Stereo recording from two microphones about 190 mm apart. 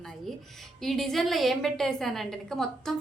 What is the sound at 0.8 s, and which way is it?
A woman's voice, centre (ahead or behind).